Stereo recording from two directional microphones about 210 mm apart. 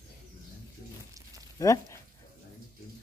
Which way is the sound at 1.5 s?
15° left (ahead or behind).